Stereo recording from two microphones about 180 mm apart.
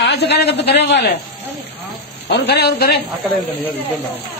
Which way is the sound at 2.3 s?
65° left (ahead or behind).